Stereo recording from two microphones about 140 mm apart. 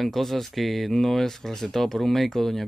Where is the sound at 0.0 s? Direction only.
Centre (ahead or behind).